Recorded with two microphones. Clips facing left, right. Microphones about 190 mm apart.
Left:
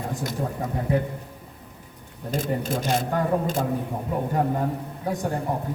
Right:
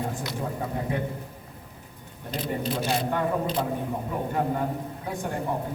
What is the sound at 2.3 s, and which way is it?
A man's voice, 45° left (ahead or behind).